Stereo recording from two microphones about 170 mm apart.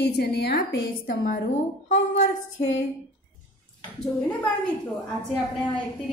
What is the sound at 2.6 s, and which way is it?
Speech, 90° left.